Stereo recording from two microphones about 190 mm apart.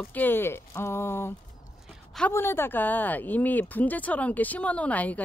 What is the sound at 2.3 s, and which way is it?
Speech, 10° left (ahead or behind).